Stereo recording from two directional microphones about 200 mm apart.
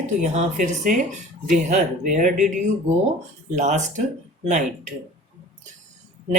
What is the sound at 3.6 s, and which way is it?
Speech, 35° right (ahead or behind).